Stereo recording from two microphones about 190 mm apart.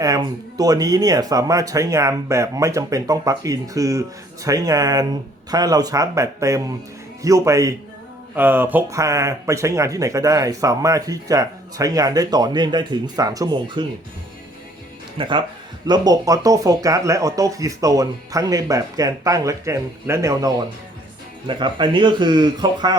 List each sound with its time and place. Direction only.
0.0 s speech: 20° right (ahead or behind)
15.2 s speech: 25° right (ahead or behind)